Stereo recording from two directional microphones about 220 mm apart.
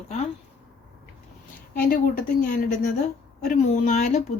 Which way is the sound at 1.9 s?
40° left (ahead or behind).